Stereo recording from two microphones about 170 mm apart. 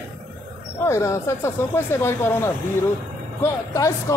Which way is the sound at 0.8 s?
15° left (ahead or behind).